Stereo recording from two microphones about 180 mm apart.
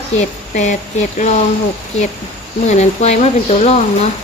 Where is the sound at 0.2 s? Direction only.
40° left (ahead or behind).